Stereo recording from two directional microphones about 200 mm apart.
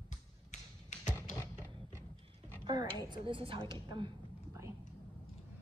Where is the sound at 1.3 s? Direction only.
15° left (ahead or behind).